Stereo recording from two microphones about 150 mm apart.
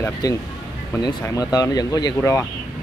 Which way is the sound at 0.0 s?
25° left (ahead or behind).